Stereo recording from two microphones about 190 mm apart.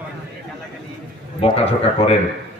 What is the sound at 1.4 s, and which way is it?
Speech, 30° left (ahead or behind).